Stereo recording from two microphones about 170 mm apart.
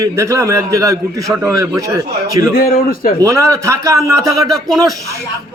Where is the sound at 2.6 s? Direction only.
55° left (ahead or behind).